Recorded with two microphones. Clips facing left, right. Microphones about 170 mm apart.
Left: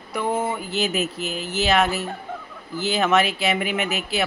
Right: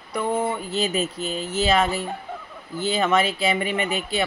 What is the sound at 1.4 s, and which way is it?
Speech, 75° left (ahead or behind).